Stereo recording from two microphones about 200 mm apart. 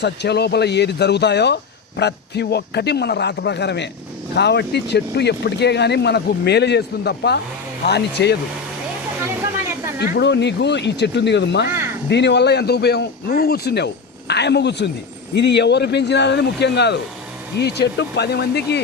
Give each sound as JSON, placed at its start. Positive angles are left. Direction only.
{"t": 0.0, "sound": "speech", "side_deg": 55}
{"t": 10.0, "sound": "speech", "side_deg": 60}